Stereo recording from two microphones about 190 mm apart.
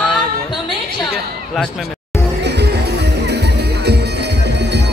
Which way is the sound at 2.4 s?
60° right (ahead or behind).